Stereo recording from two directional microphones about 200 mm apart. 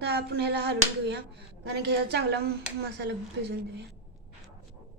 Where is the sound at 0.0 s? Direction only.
55° right (ahead or behind).